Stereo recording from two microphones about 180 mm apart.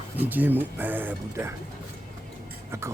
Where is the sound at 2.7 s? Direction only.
15° right (ahead or behind).